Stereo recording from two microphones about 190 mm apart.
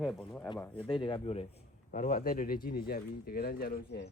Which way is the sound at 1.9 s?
45° left (ahead or behind).